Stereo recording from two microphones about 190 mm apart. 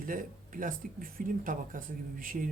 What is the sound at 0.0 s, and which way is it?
A woman's voice, 45° right (ahead or behind).